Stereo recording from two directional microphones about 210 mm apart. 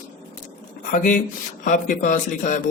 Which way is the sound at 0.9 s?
40° left (ahead or behind).